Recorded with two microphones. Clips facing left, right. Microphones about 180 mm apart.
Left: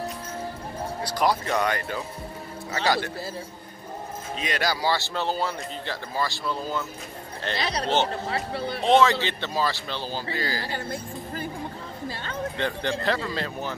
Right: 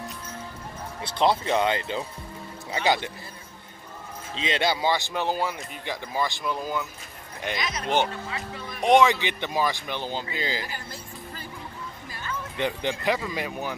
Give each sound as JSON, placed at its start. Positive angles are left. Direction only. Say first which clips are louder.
{"t": 1.0, "sound": "speech", "louder": "right 2 dB", "side_deg": -25}
{"t": 4.4, "sound": "speech", "louder": "right 2 dB", "side_deg": -25}
{"t": 7.5, "sound": "a man's voice", "louder": "left 1 dB", "side_deg": 35}
{"t": 8.8, "sound": "speech", "louder": "right 1 dB", "side_deg": -15}
{"t": 12.5, "sound": "speech", "louder": "right 2 dB", "side_deg": -15}